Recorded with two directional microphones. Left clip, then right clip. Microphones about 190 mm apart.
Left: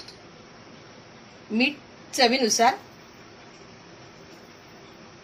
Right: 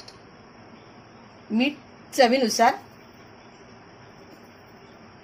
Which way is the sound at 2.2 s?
35° right (ahead or behind).